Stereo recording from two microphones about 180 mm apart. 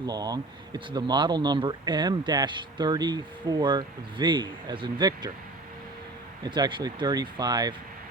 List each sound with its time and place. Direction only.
0.0 s speech: 20° right (ahead or behind)
6.4 s speech: 25° right (ahead or behind)